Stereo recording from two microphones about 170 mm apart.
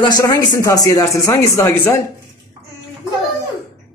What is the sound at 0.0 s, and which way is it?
Speech, 20° left (ahead or behind).